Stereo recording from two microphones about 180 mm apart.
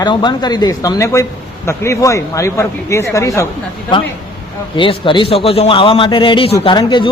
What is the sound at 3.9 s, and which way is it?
A man's voice, 25° left (ahead or behind).